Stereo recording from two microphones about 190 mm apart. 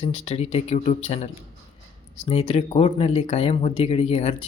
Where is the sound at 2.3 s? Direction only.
35° left (ahead or behind).